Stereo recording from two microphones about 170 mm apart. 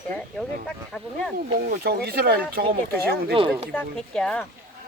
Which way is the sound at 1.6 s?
65° right (ahead or behind).